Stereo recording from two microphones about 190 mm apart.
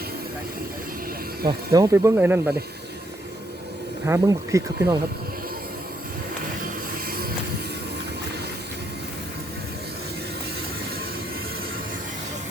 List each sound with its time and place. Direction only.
1.5 s speech: 20° right (ahead or behind)
4.0 s speech: 15° right (ahead or behind)